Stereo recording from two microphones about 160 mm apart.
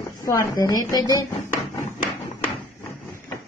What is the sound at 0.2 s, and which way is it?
A woman's voice, 20° left (ahead or behind).